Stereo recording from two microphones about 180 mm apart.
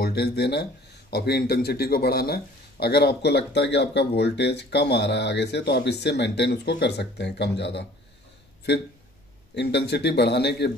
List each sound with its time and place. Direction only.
0.0 s speech: 65° left (ahead or behind)
9.6 s speech: 70° left (ahead or behind)